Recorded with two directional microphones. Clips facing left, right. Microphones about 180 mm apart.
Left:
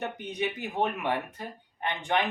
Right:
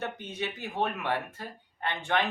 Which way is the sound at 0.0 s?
15° left (ahead or behind).